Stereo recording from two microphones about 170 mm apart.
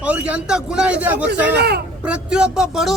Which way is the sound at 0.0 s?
10° right (ahead or behind).